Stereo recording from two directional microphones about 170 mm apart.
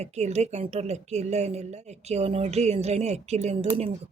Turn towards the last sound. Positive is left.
turn(degrees=-40)  # may be behind; listen again after turning